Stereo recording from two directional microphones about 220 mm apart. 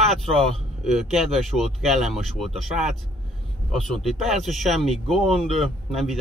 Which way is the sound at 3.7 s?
Centre (ahead or behind).